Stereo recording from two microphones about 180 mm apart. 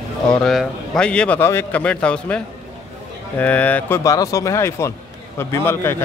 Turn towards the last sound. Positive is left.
turn(degrees=15)  # may be behind; listen again after turning